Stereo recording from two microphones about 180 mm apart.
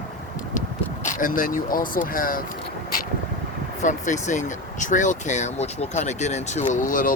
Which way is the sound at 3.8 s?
45° left (ahead or behind).